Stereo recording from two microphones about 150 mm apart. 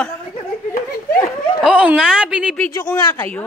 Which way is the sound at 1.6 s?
10° right (ahead or behind).